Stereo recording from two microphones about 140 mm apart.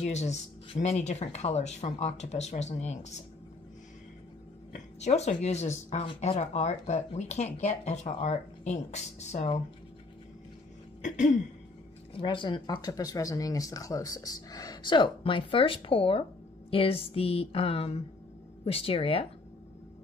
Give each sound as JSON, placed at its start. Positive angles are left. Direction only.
{"t": 0.0, "sound": "speech", "side_deg": 55}
{"t": 5.0, "sound": "speech", "side_deg": 55}
{"t": 11.0, "sound": "throat clearing", "side_deg": 60}
{"t": 12.1, "sound": "speech", "side_deg": 40}